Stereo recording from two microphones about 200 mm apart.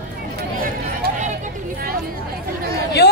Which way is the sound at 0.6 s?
40° right (ahead or behind).